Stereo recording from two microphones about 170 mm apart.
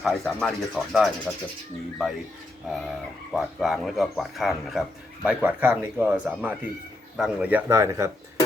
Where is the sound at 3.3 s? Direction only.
Centre (ahead or behind).